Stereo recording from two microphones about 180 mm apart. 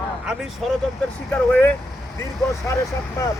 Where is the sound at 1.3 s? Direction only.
5° left (ahead or behind).